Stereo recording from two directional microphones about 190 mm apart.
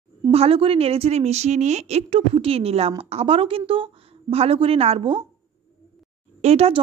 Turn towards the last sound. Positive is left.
turn(degrees=-35)  # may be behind; listen again after turning